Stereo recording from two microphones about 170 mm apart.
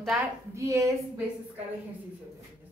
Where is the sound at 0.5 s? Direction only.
20° right (ahead or behind).